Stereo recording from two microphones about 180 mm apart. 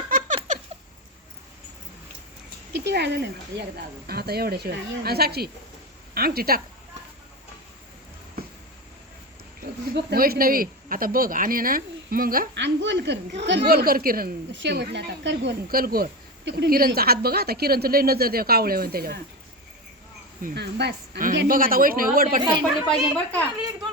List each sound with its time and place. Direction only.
0.3 s rodents: 40° right (ahead or behind)
2.7 s a woman's voice: 70° right (ahead or behind)
9.6 s speech: 60° right (ahead or behind)
12.5 s a woman's voice: 80° right; by 14.3 s 55° right (ahead or behind)
14.5 s a woman's voice: 75° right (ahead or behind); by 19.2 s 60° right (ahead or behind)
20.4 s a woman's voice: 60° right (ahead or behind)
22.9 s a woman's voice: 5° left (ahead or behind)